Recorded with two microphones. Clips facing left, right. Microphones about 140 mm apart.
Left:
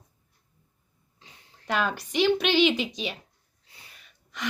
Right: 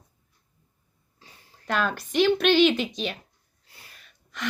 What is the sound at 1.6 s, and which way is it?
A woman's voice, 15° left (ahead or behind).